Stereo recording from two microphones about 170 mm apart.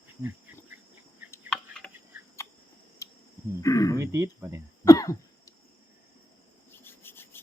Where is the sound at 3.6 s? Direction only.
20° left (ahead or behind).